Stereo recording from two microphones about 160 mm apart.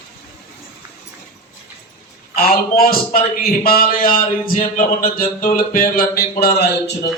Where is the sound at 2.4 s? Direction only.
70° left (ahead or behind); by 7.1 s 90° left.